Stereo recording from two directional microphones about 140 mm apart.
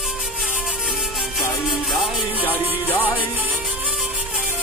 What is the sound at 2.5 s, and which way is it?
Music, 15° right (ahead or behind).